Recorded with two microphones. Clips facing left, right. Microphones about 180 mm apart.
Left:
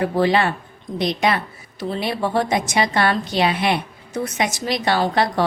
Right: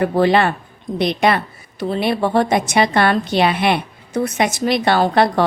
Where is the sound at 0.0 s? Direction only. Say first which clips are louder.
Right 3 dB; 55° right (ahead or behind).